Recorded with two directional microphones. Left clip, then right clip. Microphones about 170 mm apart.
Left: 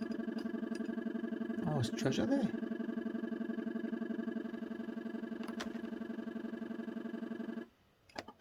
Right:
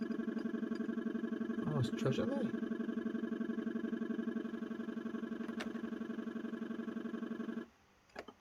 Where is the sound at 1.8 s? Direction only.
45° left (ahead or behind).